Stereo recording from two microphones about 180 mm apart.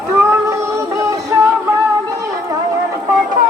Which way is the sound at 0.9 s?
15° right (ahead or behind).